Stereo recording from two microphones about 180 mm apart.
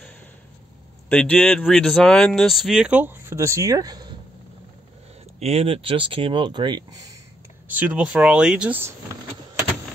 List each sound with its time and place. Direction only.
1.0 s speech: 10° left (ahead or behind); by 4.2 s 20° right (ahead or behind)
5.4 s speech: 35° right (ahead or behind)
7.6 s speech: 10° right (ahead or behind)